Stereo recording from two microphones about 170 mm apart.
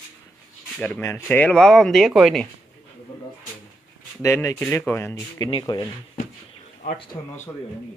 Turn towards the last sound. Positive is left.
turn(degrees=30)  # may be behind; listen again after turning